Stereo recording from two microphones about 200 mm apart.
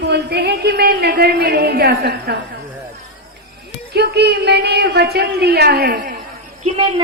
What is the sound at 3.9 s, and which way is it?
Speech, 55° right (ahead or behind).